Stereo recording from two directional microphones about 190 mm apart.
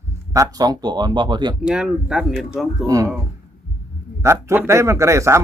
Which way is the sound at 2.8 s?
15° right (ahead or behind).